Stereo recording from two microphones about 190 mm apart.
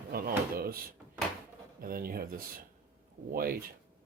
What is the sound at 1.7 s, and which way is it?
Speech, 50° right (ahead or behind).